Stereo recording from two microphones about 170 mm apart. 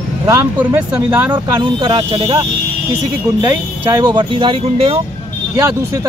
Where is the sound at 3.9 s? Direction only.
25° right (ahead or behind).